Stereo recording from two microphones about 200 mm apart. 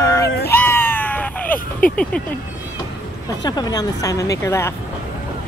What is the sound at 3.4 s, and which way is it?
Speech, 20° left (ahead or behind).